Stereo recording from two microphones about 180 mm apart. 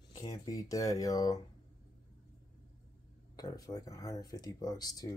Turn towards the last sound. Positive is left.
turn(degrees=20)  # may be behind; listen again after turning